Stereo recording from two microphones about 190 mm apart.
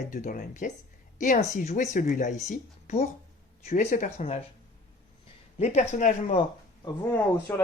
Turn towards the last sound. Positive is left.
turn(degrees=10)  # may be behind; listen again after turning